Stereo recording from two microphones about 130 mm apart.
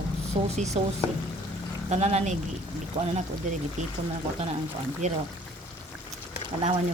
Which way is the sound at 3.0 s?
45° right (ahead or behind).